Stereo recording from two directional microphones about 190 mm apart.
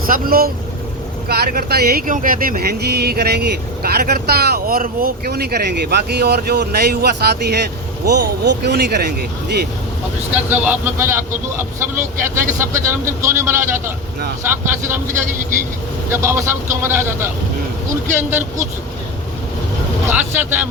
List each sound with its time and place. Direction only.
0.0 s speech: 50° right (ahead or behind)
10.3 s speech: 10° right (ahead or behind)
20.1 s speech: 10° right (ahead or behind)